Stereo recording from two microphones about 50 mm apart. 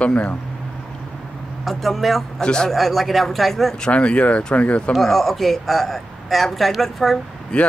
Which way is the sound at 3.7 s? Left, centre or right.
Left.